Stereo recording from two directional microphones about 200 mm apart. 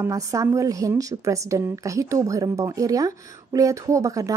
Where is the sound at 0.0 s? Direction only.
15° right (ahead or behind).